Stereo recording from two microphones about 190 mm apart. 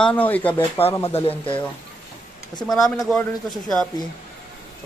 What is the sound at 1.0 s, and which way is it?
Speech, 30° left (ahead or behind).